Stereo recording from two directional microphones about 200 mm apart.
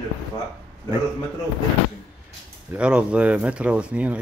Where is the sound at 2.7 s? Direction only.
5° right (ahead or behind).